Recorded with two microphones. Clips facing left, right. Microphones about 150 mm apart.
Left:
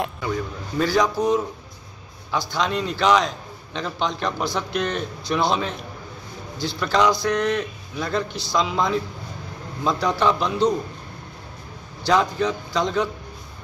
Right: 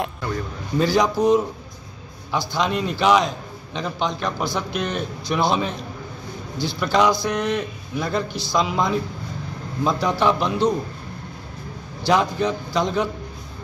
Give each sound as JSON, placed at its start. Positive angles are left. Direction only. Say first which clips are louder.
{"t": 0.0, "sound": "a sound", "louder": "left 1 dB", "side_deg": 0}
{"t": 0.7, "sound": "speech", "louder": "right 2 dB", "side_deg": -15}
{"t": 6.8, "sound": "speech", "louder": "right 1 dB", "side_deg": -10}
{"t": 12.0, "sound": "speech", "louder": "right 1 dB", "side_deg": -15}